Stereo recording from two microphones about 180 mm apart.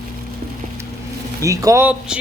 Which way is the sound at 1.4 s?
15° right (ahead or behind).